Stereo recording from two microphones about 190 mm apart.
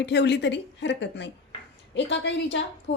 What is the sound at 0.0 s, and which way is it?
Speech, 65° left (ahead or behind).